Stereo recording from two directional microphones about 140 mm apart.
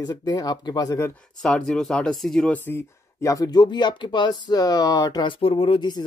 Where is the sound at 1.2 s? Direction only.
5° left (ahead or behind).